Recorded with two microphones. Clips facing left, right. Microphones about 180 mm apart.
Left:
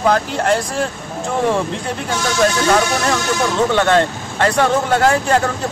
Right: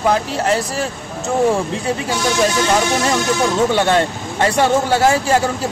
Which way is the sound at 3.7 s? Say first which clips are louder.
Left 1 dB; 15° right (ahead or behind).